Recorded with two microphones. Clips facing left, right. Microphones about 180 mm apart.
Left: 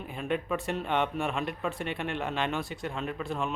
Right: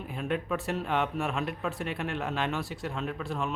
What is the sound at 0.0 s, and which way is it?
Speech, centre (ahead or behind).